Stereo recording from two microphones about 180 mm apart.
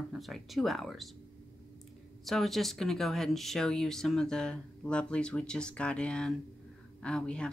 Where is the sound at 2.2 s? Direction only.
Centre (ahead or behind).